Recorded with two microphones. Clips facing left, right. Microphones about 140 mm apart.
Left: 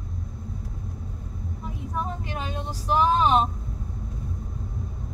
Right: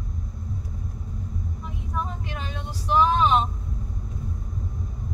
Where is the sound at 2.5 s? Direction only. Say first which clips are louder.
Right 2 dB; 40° left (ahead or behind).